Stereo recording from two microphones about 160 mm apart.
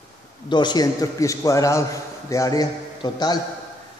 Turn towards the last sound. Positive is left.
turn(degrees=25)  # may be behind; listen again after turning